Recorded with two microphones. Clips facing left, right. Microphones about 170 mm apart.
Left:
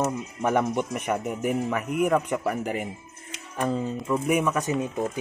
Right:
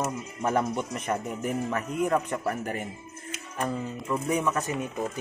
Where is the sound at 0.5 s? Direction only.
10° left (ahead or behind).